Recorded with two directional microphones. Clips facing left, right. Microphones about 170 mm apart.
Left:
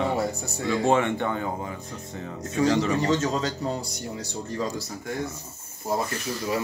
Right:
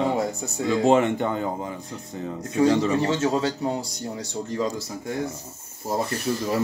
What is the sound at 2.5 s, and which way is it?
Speech, 30° right (ahead or behind).